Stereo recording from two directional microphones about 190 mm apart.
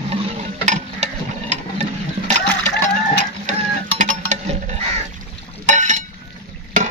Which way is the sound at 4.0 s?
40° right (ahead or behind).